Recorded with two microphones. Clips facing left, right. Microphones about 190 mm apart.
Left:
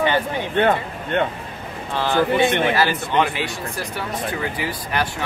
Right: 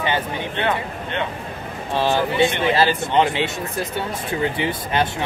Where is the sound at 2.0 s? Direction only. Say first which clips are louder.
Even; 20° right (ahead or behind).